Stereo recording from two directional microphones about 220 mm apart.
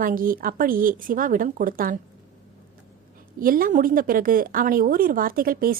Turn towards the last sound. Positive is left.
turn(degrees=-40)  # may be behind; listen again after turning